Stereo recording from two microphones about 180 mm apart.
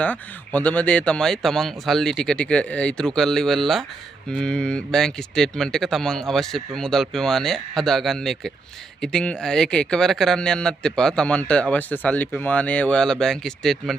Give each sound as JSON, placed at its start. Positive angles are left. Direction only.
{"t": 0.0, "sound": "speech", "side_deg": 10}